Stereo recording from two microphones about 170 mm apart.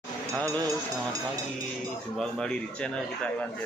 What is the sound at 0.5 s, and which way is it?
Speech, 20° right (ahead or behind).